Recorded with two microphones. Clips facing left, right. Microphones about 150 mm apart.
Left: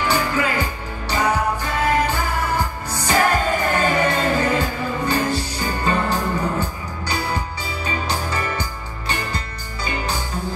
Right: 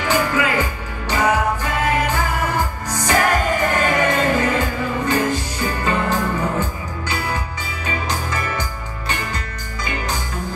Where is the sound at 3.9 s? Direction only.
30° left (ahead or behind).